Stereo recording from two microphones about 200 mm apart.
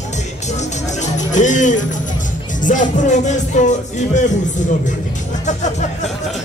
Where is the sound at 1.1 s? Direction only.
40° left (ahead or behind).